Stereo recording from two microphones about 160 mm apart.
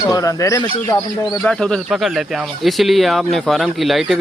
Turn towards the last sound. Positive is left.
turn(degrees=0)  # may be behind; listen again after turning